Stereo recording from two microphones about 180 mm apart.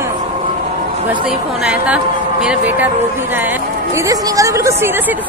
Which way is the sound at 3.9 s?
20° right (ahead or behind).